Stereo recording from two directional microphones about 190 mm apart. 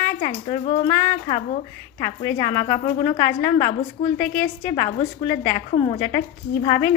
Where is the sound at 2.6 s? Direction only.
20° left (ahead or behind).